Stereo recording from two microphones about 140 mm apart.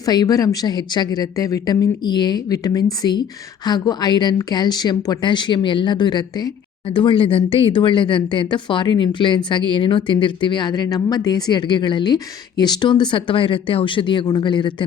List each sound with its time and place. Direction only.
0.0 s a woman's voice: 30° left (ahead or behind)